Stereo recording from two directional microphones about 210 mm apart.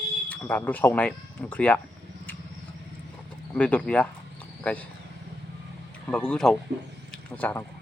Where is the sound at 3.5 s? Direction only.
5° left (ahead or behind).